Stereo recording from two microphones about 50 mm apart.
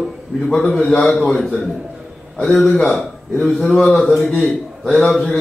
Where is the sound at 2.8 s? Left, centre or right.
Left.